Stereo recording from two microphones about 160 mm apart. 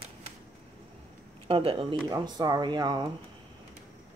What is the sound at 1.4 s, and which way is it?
A woman's voice, 35° right (ahead or behind).